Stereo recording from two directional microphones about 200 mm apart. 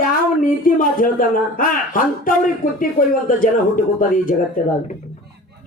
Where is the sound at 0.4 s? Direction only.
45° left (ahead or behind).